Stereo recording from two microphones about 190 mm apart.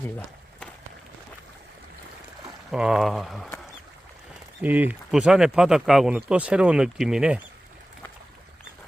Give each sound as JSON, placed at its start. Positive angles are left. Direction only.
{"t": 2.7, "sound": "speech", "side_deg": -5}
{"t": 4.6, "sound": "speech", "side_deg": -10}